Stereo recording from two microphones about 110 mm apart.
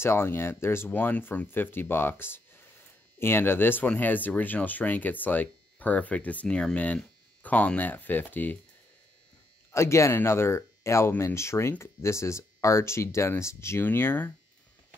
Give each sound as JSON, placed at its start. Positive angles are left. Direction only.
{"t": 0.0, "sound": "speech", "side_deg": 20}
{"t": 9.7, "sound": "speech", "side_deg": 25}